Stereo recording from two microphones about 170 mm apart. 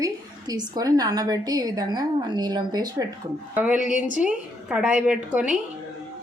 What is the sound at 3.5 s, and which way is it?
A woman's voice, 5° right (ahead or behind).